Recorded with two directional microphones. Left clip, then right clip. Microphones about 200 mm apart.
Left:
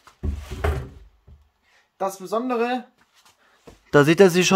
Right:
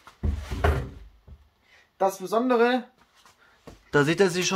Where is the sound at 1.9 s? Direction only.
45° left (ahead or behind).